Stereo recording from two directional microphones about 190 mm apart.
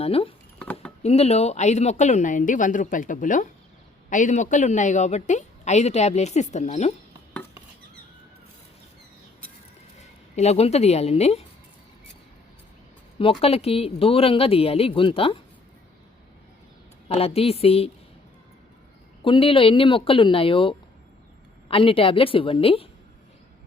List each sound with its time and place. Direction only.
0.0 s a woman's voice: 30° left (ahead or behind)
0.6 s a sound: 5° left (ahead or behind)
1.0 s a woman's voice: 35° left (ahead or behind)
10.3 s a woman's voice: 35° left (ahead or behind)
13.4 s a woman's voice: 30° left (ahead or behind)
17.1 s a woman's voice: 30° left (ahead or behind)
19.2 s speech: 30° left (ahead or behind)